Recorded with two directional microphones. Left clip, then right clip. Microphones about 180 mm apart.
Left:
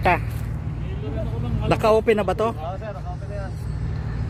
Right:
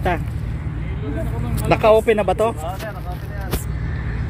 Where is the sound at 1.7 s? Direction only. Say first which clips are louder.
Right 4 dB; 20° left (ahead or behind).